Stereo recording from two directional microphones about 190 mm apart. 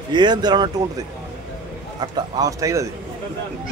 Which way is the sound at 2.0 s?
20° right (ahead or behind).